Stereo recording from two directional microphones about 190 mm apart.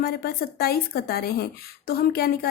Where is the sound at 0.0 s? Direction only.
55° left (ahead or behind).